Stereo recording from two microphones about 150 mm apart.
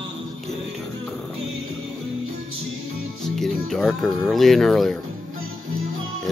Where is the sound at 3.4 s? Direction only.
Centre (ahead or behind).